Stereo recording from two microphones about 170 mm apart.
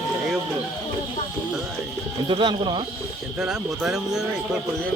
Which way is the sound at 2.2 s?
30° right (ahead or behind).